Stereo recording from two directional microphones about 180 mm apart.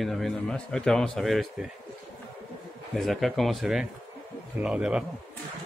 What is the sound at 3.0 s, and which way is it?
A man's voice, centre (ahead or behind).